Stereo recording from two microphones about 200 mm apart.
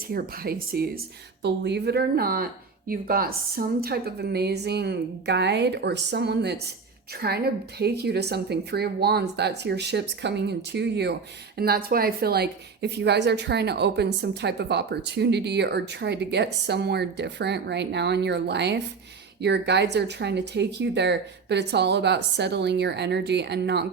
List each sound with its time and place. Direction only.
0.1 s speech: 50° right (ahead or behind)